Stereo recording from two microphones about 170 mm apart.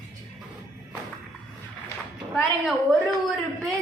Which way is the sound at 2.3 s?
Centre (ahead or behind).